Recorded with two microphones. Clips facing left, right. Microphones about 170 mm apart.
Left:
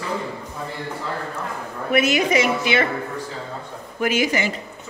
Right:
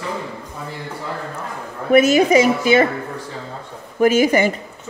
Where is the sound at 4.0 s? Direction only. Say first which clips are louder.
Right 7 dB; 45° right (ahead or behind).